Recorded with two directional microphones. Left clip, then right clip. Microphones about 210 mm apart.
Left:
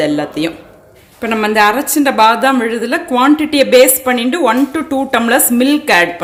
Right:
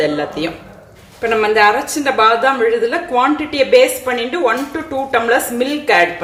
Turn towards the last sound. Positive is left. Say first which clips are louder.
# left 3 dB
turn(degrees=50)  # may be behind; listen again after turning